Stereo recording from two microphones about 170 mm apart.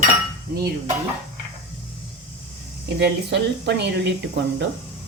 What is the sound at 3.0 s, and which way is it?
Speech, 80° right.